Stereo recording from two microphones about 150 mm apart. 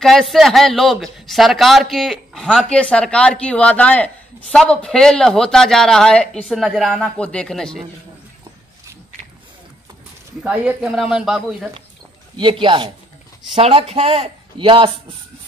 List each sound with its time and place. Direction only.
0.0 s a man's voice: centre (ahead or behind)
10.4 s a man's voice: 10° right (ahead or behind)
12.4 s speech: 35° right (ahead or behind)